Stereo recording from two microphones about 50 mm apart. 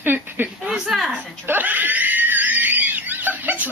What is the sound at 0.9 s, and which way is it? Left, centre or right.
Speech, centre.